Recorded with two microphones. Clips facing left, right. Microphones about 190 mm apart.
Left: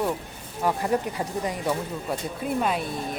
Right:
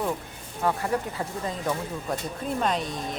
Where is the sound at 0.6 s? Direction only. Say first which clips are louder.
Left 2 dB; 15° left (ahead or behind).